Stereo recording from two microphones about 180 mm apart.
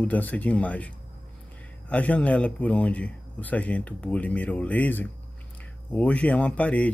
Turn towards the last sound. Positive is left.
turn(degrees=5)  # may be behind; listen again after turning